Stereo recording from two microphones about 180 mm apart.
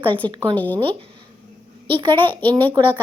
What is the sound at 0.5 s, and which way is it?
Speech, 10° left (ahead or behind).